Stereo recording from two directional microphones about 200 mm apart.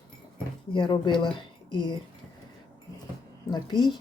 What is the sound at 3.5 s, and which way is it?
Speech, 20° left (ahead or behind).